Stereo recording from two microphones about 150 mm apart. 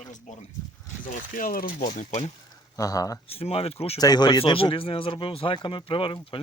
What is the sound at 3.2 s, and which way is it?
Speech, 40° left (ahead or behind).